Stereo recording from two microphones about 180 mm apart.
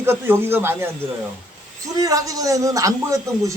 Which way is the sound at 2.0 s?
20° right (ahead or behind).